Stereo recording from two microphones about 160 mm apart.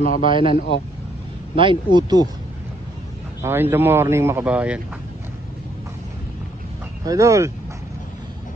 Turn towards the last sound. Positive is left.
turn(degrees=-20)  # may be behind; listen again after turning